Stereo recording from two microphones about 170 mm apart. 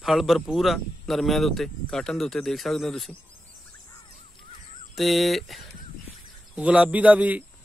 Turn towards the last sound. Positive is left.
turn(degrees=-10)  # may be behind; listen again after turning